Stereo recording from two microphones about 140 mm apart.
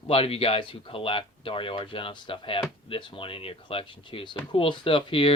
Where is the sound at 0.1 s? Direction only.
45° left (ahead or behind).